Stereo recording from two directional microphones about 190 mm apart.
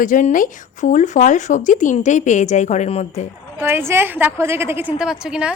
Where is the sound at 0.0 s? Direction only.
45° left (ahead or behind).